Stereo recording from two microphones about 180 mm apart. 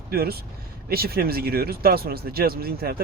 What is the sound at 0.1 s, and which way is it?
Speech, 60° right (ahead or behind).